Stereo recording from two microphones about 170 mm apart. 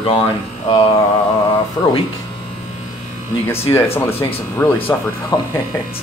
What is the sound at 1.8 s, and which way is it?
Speech, 15° left (ahead or behind).